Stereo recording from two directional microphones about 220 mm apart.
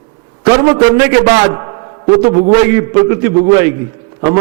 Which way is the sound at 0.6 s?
20° right (ahead or behind).